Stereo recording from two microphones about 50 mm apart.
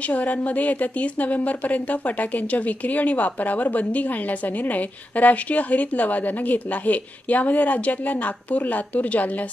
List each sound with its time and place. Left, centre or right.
0.1 s a woman's voice: left